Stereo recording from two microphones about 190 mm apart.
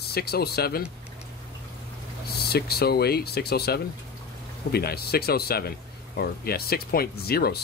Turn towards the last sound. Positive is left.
turn(degrees=55)  # may be behind; listen again after turning